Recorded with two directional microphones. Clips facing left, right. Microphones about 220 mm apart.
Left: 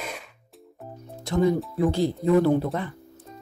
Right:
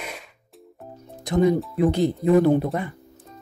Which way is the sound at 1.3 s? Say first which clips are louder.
Right 3 dB; 15° right (ahead or behind).